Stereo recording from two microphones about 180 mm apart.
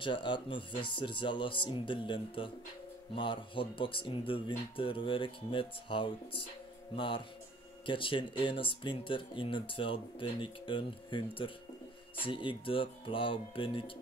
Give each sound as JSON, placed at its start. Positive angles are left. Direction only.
{"t": 0.0, "sound": "speech", "side_deg": 25}
{"t": 7.8, "sound": "speech", "side_deg": 30}